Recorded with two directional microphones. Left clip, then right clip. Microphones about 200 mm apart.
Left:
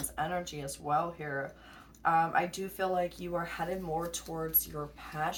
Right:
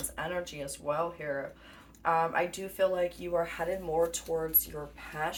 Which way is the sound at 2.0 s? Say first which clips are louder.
Even; 10° right (ahead or behind).